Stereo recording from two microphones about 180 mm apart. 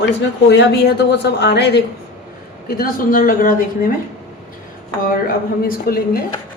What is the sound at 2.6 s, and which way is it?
A woman's voice, 55° left (ahead or behind).